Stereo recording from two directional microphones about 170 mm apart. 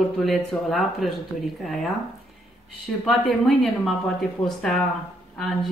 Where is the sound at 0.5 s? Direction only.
Centre (ahead or behind).